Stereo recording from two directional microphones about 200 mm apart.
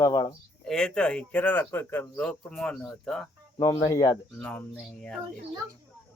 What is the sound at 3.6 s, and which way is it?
Speech, 20° left (ahead or behind).